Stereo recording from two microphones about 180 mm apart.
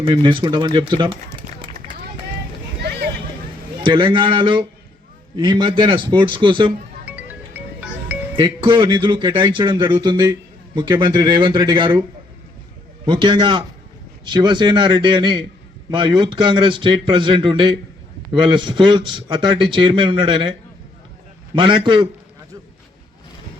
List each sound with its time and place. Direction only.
0.0 s a man's voice: 25° right (ahead or behind)
2.8 s a sound: 65° right (ahead or behind)
3.8 s a man's voice: 25° right (ahead or behind)
7.0 s music: 10° right (ahead or behind)
8.4 s a man's voice: 25° right (ahead or behind)
13.1 s a man's voice: 25° right (ahead or behind)